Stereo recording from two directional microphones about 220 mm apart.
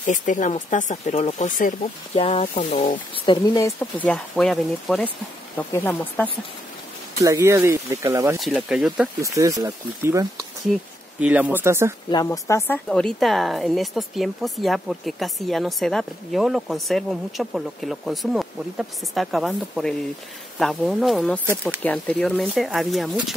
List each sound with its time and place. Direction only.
0.0 s speech: 35° left (ahead or behind)
3.3 s speech: 15° left (ahead or behind)
7.2 s speech: 15° right (ahead or behind)
8.4 s speech: centre (ahead or behind)
12.1 s speech: 15° left (ahead or behind)
21.5 s speech: 10° right (ahead or behind)
21.8 s speech: 5° left (ahead or behind)